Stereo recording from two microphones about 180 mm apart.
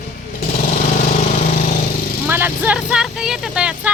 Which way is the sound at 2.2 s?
10° right (ahead or behind).